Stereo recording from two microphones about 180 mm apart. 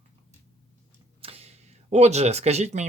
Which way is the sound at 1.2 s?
35° right (ahead or behind).